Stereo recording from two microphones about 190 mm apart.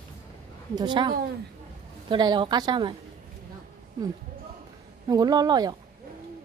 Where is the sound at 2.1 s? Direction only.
25° right (ahead or behind).